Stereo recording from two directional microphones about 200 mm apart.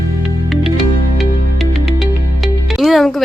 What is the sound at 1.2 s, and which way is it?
Music, centre (ahead or behind).